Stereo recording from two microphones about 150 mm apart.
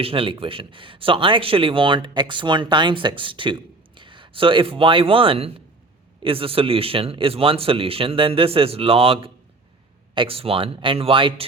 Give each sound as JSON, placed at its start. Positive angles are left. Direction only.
{"t": 0.0, "sound": "a man's voice", "side_deg": -40}